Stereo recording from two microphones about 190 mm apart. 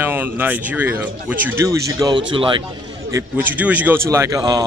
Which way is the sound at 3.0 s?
15° right (ahead or behind).